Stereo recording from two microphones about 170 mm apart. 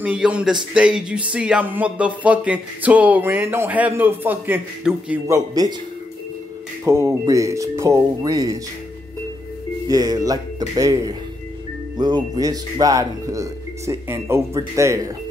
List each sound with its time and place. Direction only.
0.0 s a man's voice: 5° right (ahead or behind)
0.7 s a sound: 5° right (ahead or behind)
5.3 s speech: 20° right (ahead or behind)
6.8 s speech: 15° right (ahead or behind)
9.8 s speech: 20° right (ahead or behind)